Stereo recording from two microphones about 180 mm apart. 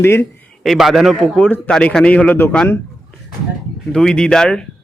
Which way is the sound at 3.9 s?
5° left (ahead or behind).